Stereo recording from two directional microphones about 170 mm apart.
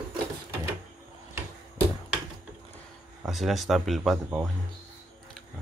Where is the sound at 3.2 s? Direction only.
Centre (ahead or behind).